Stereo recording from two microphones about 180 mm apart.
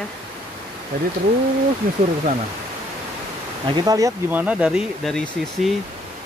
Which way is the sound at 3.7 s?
20° right (ahead or behind).